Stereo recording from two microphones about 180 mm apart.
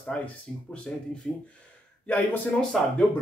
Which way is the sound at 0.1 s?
5° left (ahead or behind).